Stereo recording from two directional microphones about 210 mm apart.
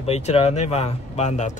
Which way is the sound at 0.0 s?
30° left (ahead or behind).